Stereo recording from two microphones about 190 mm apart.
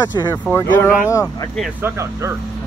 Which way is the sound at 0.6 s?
15° left (ahead or behind).